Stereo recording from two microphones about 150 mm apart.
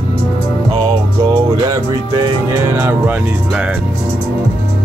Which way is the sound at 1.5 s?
25° right (ahead or behind).